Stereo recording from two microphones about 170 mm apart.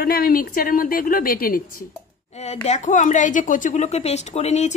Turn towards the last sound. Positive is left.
turn(degrees=40)  # may be behind; listen again after turning